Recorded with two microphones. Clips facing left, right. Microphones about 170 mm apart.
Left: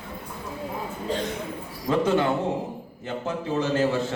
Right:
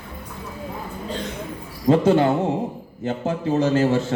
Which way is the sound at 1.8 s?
35° right (ahead or behind).